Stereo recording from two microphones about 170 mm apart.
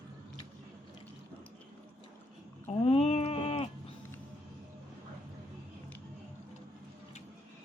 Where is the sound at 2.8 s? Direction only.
35° left (ahead or behind).